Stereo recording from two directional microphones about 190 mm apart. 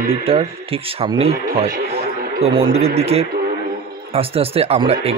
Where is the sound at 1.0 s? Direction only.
30° right (ahead or behind).